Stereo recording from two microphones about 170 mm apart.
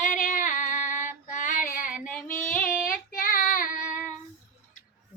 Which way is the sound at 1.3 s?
50° left (ahead or behind).